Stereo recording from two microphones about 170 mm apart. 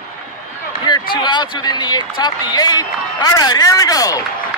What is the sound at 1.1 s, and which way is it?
A man's voice, 25° left (ahead or behind).